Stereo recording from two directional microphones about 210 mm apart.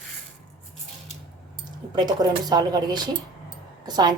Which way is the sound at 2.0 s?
20° right (ahead or behind).